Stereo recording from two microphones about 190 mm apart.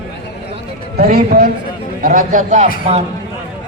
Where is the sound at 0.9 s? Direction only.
55° right (ahead or behind).